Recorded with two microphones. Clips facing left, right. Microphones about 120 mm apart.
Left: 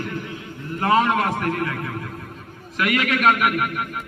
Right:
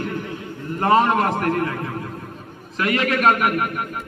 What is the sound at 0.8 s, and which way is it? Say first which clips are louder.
A man's voice: right 2 dB; 35° right (ahead or behind).